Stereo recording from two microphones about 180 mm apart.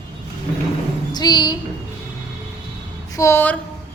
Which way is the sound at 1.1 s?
20° left (ahead or behind).